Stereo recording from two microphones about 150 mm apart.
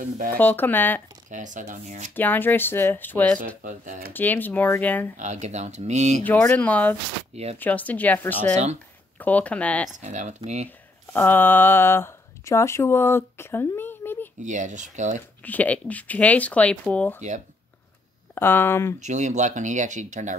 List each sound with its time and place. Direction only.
0.0 s speech: 65° right (ahead or behind)
0.4 s speech: 10° left (ahead or behind)
1.3 s speech: 55° right (ahead or behind)
2.1 s speech: 15° left (ahead or behind)
3.6 s speech: 60° right (ahead or behind)
4.1 s speech: 10° left (ahead or behind)
5.1 s speech: 50° right (ahead or behind)
6.2 s speech: 10° left (ahead or behind)
9.9 s speech: 55° right (ahead or behind)
11.1 s speech: 15° left (ahead or behind)
14.4 s speech: 55° right (ahead or behind)
15.4 s speech: 10° left (ahead or behind)
18.3 s speech: 15° left (ahead or behind)
18.9 s speech: 50° right (ahead or behind)